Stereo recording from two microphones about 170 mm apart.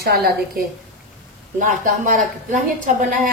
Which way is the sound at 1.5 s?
50° right (ahead or behind).